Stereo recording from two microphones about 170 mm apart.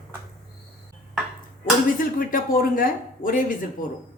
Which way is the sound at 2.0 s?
55° left (ahead or behind).